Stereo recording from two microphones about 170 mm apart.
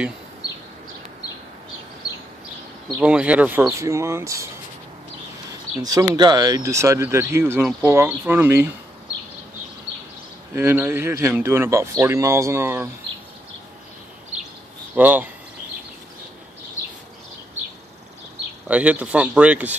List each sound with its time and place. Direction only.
3.0 s speech: 5° right (ahead or behind)
5.5 s a sound: 20° right (ahead or behind)
6.1 s speech: 25° right (ahead or behind)
10.5 s speech: 15° right (ahead or behind)
15.0 s speech: 10° right (ahead or behind)
18.7 s speech: 10° right (ahead or behind)